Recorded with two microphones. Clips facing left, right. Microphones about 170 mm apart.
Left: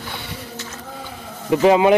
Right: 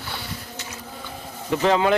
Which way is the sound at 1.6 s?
15° left (ahead or behind).